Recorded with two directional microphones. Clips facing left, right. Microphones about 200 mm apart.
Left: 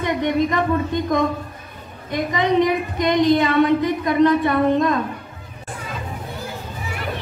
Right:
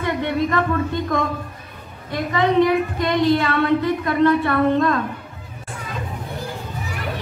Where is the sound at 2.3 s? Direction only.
20° left (ahead or behind).